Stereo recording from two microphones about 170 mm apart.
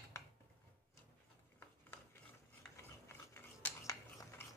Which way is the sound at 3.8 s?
15° left (ahead or behind).